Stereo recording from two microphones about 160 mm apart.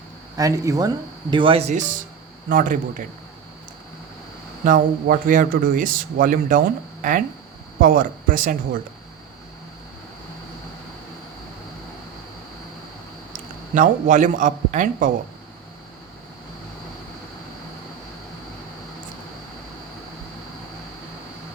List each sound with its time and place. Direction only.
0.3 s a man's voice: 20° right (ahead or behind); by 2.7 s 55° right (ahead or behind)
4.6 s a man's voice: 60° right (ahead or behind)
13.3 s a man's voice: 55° right (ahead or behind)